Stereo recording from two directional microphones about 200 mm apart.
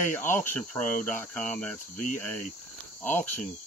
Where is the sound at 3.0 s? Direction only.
10° left (ahead or behind).